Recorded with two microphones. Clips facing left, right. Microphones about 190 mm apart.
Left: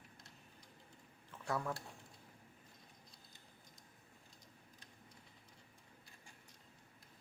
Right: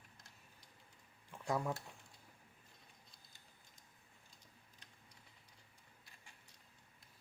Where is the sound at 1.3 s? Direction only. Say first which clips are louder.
Right 2 dB; 15° right (ahead or behind).